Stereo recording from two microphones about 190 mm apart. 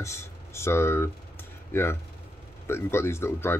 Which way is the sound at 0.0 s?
15° left (ahead or behind).